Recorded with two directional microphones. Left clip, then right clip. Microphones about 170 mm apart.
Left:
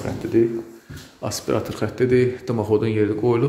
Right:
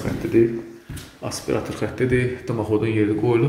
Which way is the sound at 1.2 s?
30° left (ahead or behind).